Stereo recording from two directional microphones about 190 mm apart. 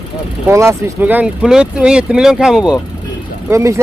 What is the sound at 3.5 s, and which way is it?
Speech, 15° right (ahead or behind).